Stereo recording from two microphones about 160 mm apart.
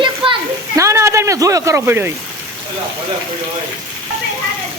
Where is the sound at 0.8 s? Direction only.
20° right (ahead or behind).